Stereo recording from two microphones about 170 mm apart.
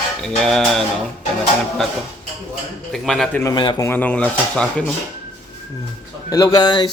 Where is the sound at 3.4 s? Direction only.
25° left (ahead or behind).